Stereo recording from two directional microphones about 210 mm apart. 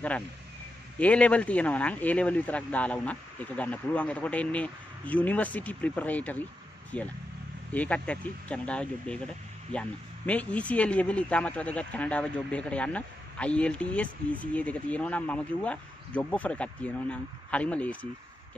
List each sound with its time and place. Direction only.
0.9 s speech: 5° left (ahead or behind)